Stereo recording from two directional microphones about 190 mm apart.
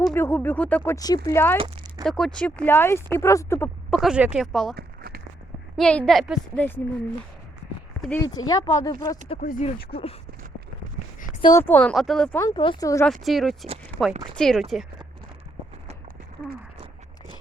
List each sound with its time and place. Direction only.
0.0 s speech: 10° left (ahead or behind)
1.5 s a sound: 25° right (ahead or behind)
2.0 s speech: centre (ahead or behind)
3.9 s speech: 5° right (ahead or behind)
4.8 s crumpling: 55° right (ahead or behind)
5.7 s speech: 5° left (ahead or behind)
6.6 s speech: 10° left (ahead or behind)
8.4 s speech: 20° left (ahead or behind)
9.4 s speech: 45° left (ahead or behind)
9.9 s speech: 30° left (ahead or behind)
11.4 s speech: 15° left (ahead or behind)
12.4 s speech: 25° left (ahead or behind)
13.2 s speech: centre (ahead or behind)